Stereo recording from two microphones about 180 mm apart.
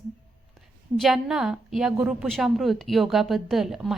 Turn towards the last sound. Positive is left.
turn(degrees=0)  # may be behind; listen again after turning